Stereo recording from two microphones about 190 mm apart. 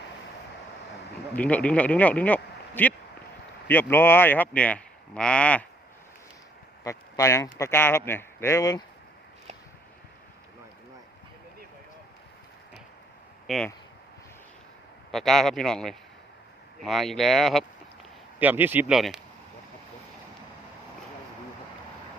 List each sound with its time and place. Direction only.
1.4 s speech: 5° left (ahead or behind)
6.8 s speech: 15° left (ahead or behind)
13.5 s a man's voice: centre (ahead or behind)
15.1 s a man's voice: centre (ahead or behind)